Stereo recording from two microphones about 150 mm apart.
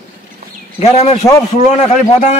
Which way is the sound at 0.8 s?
45° left (ahead or behind).